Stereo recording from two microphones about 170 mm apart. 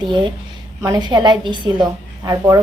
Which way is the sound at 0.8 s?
25° right (ahead or behind).